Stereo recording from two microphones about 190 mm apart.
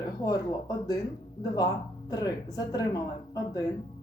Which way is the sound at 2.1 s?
20° left (ahead or behind).